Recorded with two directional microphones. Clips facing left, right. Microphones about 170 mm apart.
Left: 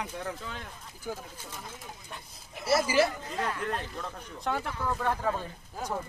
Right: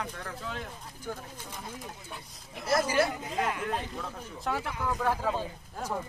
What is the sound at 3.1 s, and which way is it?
Speech, 15° right (ahead or behind).